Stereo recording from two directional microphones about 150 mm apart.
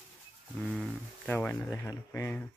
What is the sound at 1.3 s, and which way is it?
Speech, 15° left (ahead or behind).